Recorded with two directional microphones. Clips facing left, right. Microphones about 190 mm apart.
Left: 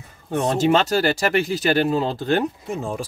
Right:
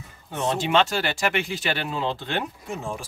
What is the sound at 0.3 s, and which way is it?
Speech, 45° left (ahead or behind).